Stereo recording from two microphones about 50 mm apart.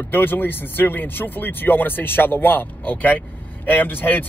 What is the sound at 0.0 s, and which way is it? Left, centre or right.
Speech, left.